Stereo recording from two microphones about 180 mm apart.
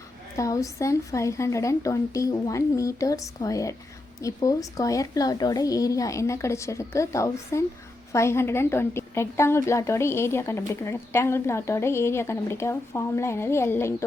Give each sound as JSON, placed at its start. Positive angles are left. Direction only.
{"t": 0.3, "sound": "a woman's voice", "side_deg": 20}